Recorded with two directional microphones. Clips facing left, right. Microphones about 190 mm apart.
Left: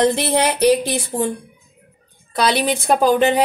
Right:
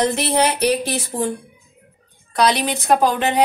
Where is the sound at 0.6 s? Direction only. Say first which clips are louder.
Left 4 dB; 30° left (ahead or behind).